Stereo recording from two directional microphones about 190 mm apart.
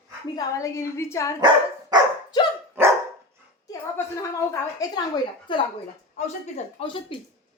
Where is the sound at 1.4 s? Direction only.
20° right (ahead or behind).